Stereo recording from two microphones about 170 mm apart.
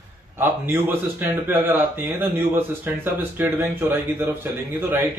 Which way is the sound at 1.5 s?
15° right (ahead or behind).